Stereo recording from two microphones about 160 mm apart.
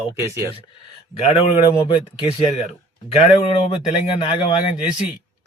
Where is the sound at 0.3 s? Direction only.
25° left (ahead or behind).